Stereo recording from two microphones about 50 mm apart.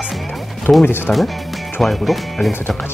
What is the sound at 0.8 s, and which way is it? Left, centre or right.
Speech, left.